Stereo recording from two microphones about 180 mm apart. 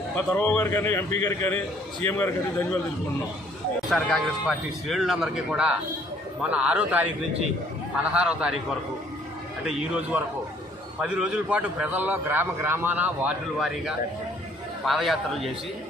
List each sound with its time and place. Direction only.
0.3 s speech: 10° left (ahead or behind)
3.9 s a man's voice: centre (ahead or behind)
9.7 s a man's voice: 5° right (ahead or behind)